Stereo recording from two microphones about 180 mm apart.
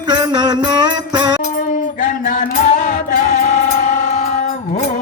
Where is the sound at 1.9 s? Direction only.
45° left (ahead or behind).